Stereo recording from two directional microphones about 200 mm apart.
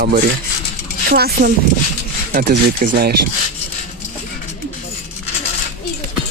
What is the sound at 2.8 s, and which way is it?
Speech, 50° right (ahead or behind).